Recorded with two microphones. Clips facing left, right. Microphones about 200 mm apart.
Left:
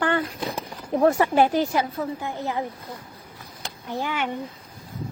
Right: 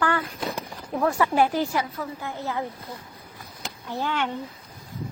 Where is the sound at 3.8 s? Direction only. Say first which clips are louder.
Even; 15° left (ahead or behind).